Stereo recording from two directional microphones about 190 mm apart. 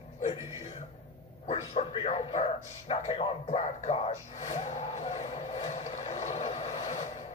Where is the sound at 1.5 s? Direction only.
30° left (ahead or behind).